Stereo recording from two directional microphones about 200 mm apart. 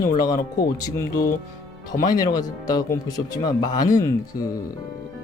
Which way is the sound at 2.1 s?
20° left (ahead or behind).